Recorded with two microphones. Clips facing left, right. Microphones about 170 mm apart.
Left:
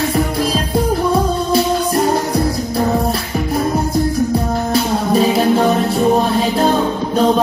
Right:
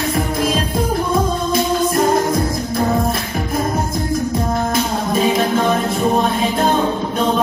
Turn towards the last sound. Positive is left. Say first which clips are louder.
# left 3 dB
turn(degrees=35)  # may be behind; listen again after turning